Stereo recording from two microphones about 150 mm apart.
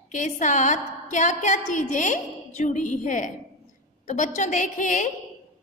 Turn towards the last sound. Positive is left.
turn(degrees=60)  # may be behind; listen again after turning